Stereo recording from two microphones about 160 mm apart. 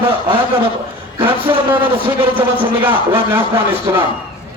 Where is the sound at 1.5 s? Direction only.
15° right (ahead or behind).